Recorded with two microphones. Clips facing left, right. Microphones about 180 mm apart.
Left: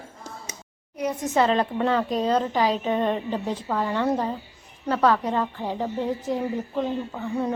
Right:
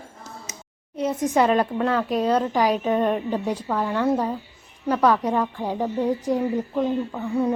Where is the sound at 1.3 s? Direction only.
10° right (ahead or behind).